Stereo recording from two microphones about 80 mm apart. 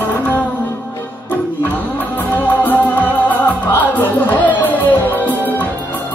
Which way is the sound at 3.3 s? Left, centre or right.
Left.